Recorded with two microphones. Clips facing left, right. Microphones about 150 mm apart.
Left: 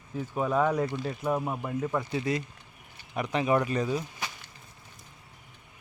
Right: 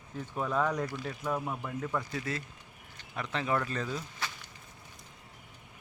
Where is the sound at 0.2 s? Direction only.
10° left (ahead or behind).